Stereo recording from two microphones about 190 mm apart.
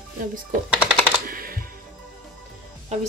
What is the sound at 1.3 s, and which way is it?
Music, 50° right (ahead or behind).